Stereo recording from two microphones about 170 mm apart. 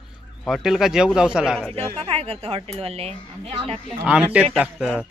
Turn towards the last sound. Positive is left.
turn(degrees=-5)  # may be behind; listen again after turning